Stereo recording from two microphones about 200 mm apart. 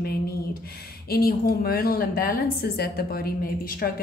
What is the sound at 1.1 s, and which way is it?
A woman's voice, 50° left (ahead or behind).